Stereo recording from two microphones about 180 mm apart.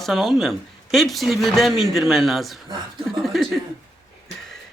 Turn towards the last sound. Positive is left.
turn(degrees=0)  # may be behind; listen again after turning